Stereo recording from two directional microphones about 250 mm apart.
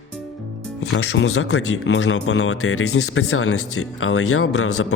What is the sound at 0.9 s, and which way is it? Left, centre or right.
Speech, left.